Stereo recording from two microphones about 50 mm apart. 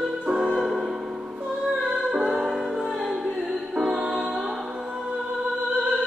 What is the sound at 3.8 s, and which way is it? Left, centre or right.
Music, centre.